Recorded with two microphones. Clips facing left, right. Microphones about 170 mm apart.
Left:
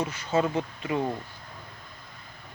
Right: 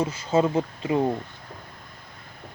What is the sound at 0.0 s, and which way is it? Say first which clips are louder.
Speech: right 4 dB; 25° right (ahead or behind).